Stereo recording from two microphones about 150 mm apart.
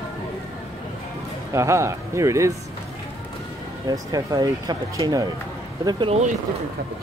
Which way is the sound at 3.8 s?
25° right (ahead or behind).